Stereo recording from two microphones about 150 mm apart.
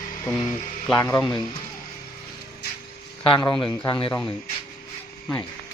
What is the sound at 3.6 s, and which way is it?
Speech, 30° left (ahead or behind).